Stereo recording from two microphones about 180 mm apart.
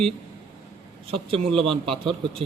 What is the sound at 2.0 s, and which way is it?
Speech, 30° right (ahead or behind).